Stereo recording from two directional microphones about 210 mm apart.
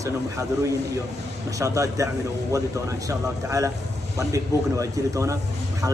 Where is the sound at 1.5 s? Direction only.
15° right (ahead or behind).